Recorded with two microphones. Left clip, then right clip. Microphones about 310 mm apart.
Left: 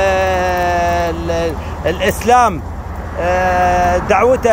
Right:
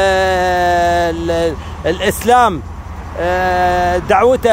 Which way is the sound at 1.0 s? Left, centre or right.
Right.